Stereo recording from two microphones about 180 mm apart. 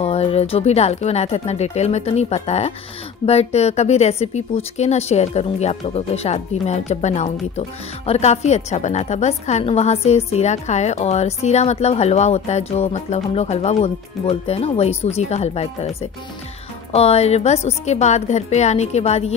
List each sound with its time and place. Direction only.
0.0 s speech: 35° left (ahead or behind)